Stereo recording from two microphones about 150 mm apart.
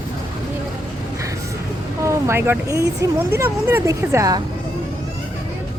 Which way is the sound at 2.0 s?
20° right (ahead or behind).